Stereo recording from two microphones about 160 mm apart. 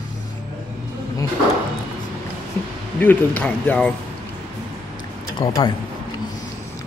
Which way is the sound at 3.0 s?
10° left (ahead or behind).